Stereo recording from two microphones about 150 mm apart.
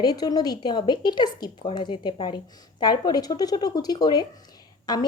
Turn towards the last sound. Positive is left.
turn(degrees=30)  # may be behind; listen again after turning